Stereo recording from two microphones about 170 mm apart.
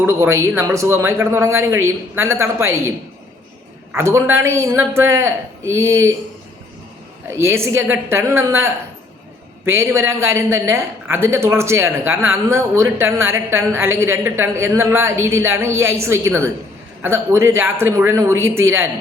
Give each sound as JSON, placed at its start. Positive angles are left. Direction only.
{"t": 0.0, "sound": "a man's voice", "side_deg": -15}
{"t": 3.9, "sound": "a man's voice", "side_deg": -15}
{"t": 7.3, "sound": "a man's voice", "side_deg": -15}